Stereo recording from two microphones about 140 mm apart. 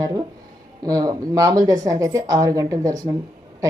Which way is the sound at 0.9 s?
25° right (ahead or behind).